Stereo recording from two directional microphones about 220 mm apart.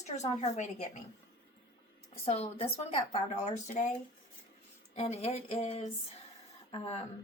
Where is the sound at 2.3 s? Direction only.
25° left (ahead or behind).